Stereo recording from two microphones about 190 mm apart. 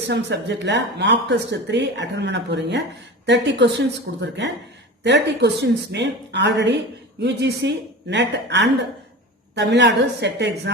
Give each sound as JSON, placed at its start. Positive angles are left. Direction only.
{"t": 0.1, "sound": "a woman's voice", "side_deg": -65}